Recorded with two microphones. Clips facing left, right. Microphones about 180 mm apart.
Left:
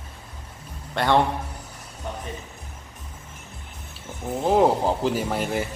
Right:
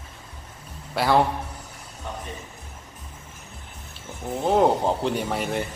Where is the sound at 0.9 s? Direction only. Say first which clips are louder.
Even; 5° right (ahead or behind).